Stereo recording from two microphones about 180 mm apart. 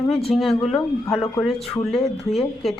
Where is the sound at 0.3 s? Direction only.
Centre (ahead or behind).